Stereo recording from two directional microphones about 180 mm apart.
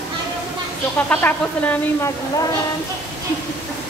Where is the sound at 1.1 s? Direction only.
10° left (ahead or behind).